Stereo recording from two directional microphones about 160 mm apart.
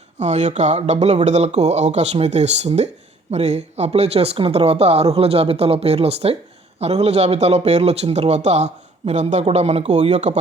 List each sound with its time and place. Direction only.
0.2 s a man's voice: 45° right (ahead or behind)